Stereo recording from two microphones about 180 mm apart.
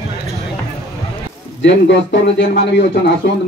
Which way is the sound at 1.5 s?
90° left.